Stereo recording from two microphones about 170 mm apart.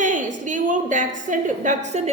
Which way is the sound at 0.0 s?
50° right (ahead or behind).